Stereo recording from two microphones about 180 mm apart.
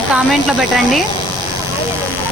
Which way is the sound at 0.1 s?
Centre (ahead or behind).